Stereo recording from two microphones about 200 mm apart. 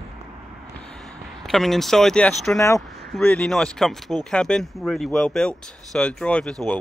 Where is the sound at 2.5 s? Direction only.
15° left (ahead or behind).